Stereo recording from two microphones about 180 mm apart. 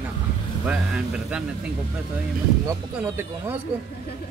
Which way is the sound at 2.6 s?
15° right (ahead or behind).